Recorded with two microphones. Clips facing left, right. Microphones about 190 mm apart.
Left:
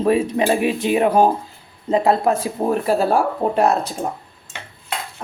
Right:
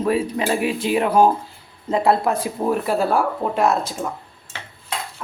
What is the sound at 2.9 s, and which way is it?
Speech, 40° left (ahead or behind).